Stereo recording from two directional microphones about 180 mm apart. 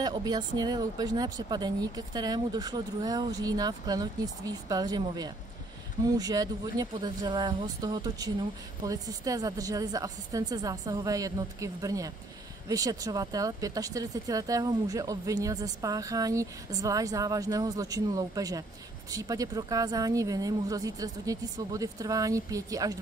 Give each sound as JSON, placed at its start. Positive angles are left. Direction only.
{"t": 0.0, "sound": "speech", "side_deg": -20}